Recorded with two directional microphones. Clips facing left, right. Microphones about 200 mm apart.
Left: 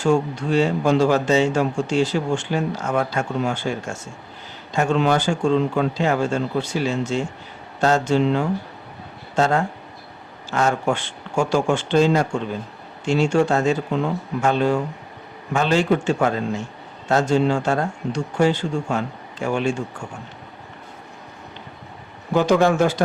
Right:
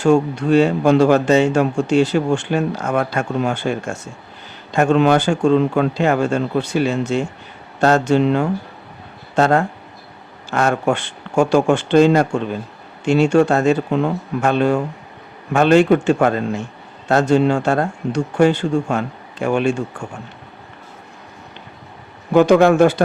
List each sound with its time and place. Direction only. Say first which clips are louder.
0.0 s speech: right 5 dB; 60° right (ahead or behind)
22.3 s speech: right 6 dB; 60° right (ahead or behind)